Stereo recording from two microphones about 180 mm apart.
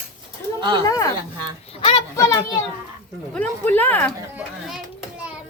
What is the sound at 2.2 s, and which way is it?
A woman's voice, 15° left (ahead or behind).